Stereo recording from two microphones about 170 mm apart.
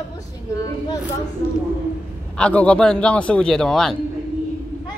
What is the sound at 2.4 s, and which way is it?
A man's voice, 5° left (ahead or behind).